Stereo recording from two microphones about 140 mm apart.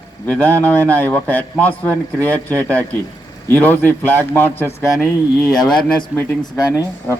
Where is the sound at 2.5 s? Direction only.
20° right (ahead or behind).